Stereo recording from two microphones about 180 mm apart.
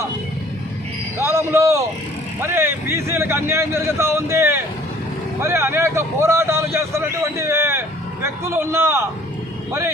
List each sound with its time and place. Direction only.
1.2 s a man's voice: 15° right (ahead or behind)